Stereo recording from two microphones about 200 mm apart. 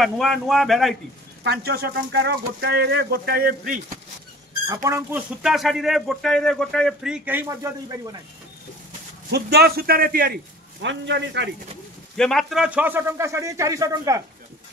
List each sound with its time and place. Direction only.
0.0 s a man's voice: centre (ahead or behind)
1.4 s speech: 50° right (ahead or behind)
4.8 s a man's voice: 15° right (ahead or behind)
5.4 s a man's voice: centre (ahead or behind); by 8.2 s 20° right (ahead or behind)
9.3 s speech: 55° right (ahead or behind)
12.2 s a man's voice: centre (ahead or behind); by 14.2 s 15° right (ahead or behind)